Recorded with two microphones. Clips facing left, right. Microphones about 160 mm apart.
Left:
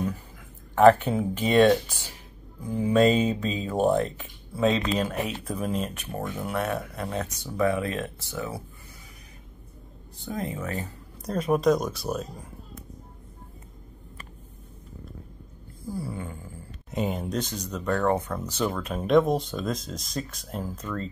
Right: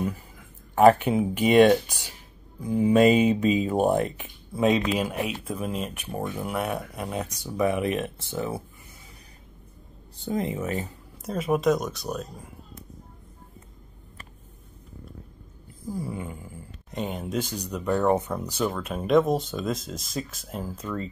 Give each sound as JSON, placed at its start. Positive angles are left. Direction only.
{"t": 0.7, "sound": "speech", "side_deg": -10}
{"t": 10.1, "sound": "speech", "side_deg": -25}
{"t": 11.2, "sound": "speech", "side_deg": -5}
{"t": 15.9, "sound": "speech", "side_deg": -15}
{"t": 16.9, "sound": "speech", "side_deg": 0}
{"t": 18.6, "sound": "speech", "side_deg": -5}